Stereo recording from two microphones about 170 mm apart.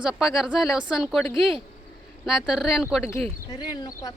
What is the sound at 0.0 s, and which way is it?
Speech, 5° right (ahead or behind).